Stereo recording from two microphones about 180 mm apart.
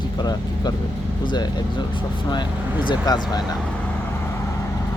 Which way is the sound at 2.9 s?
20° left (ahead or behind).